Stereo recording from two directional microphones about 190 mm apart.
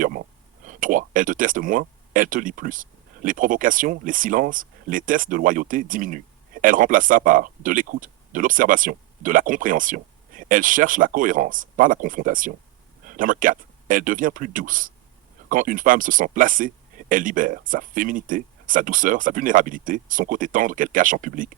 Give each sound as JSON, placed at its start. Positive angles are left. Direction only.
{"t": 0.6, "sound": "speech", "side_deg": -45}